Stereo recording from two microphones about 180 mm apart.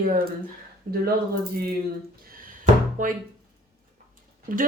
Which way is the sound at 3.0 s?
45° right (ahead or behind).